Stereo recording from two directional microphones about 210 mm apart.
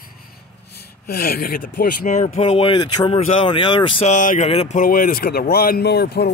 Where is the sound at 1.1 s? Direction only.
45° left (ahead or behind).